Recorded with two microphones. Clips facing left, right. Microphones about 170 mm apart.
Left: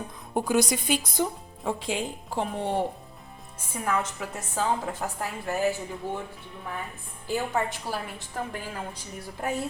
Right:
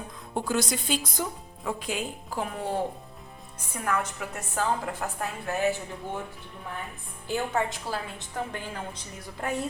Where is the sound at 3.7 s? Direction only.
10° left (ahead or behind).